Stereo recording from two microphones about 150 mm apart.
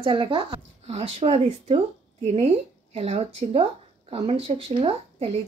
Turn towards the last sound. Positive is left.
turn(degrees=-40)  # may be behind; listen again after turning